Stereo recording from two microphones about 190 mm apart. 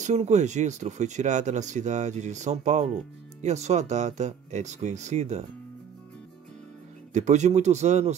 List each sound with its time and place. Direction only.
0.0 s speech: 35° right (ahead or behind)
7.2 s speech: 35° right (ahead or behind)